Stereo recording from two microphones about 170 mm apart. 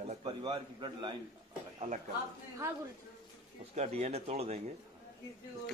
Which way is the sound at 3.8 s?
40° right (ahead or behind).